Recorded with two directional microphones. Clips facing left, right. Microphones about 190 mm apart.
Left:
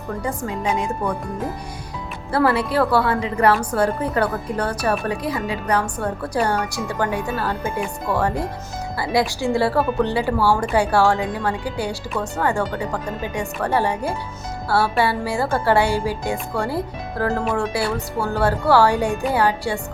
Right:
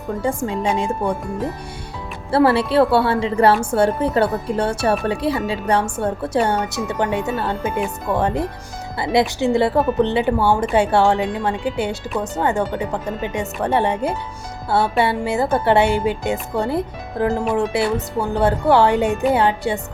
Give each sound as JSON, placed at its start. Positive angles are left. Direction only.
{"t": 0.2, "sound": "a woman's voice", "side_deg": -30}
{"t": 2.3, "sound": "a woman's voice", "side_deg": -30}